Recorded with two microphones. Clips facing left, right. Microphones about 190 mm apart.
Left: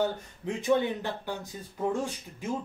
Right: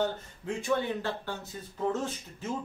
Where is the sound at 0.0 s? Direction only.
20° left (ahead or behind).